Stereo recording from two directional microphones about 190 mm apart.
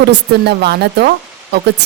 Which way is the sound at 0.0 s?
60° right (ahead or behind).